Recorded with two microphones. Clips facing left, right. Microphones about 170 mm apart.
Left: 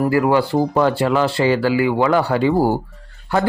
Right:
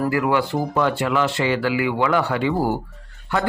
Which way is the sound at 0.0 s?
30° left (ahead or behind).